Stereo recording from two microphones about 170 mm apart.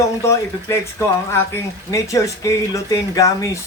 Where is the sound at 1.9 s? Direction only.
20° left (ahead or behind).